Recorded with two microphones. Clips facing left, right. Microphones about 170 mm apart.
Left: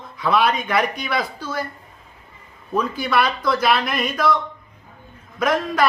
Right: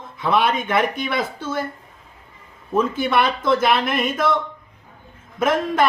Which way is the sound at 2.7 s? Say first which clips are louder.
Right 2 dB; 25° right (ahead or behind).